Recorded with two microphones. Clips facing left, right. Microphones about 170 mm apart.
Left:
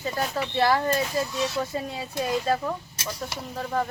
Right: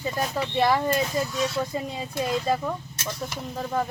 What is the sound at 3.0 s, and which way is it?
Speech, 10° left (ahead or behind).